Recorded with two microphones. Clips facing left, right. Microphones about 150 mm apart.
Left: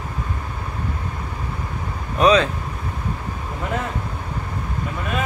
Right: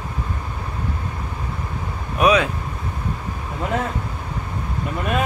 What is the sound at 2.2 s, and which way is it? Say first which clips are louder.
Speech: left 1 dB; 10° right (ahead or behind).